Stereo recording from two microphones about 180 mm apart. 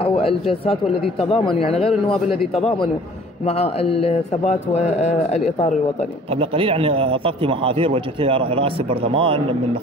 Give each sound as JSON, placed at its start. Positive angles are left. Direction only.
{"t": 0.0, "sound": "speech", "side_deg": 30}
{"t": 6.3, "sound": "a man's voice", "side_deg": -30}